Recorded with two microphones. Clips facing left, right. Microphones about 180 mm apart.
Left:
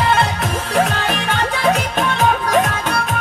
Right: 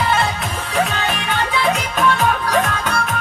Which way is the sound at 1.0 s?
50° left (ahead or behind).